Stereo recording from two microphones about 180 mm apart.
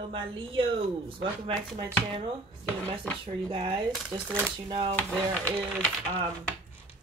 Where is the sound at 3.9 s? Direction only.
Centre (ahead or behind).